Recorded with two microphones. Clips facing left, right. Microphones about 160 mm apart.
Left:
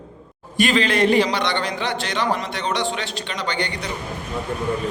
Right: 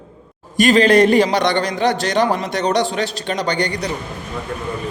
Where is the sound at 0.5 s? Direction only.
40° right (ahead or behind).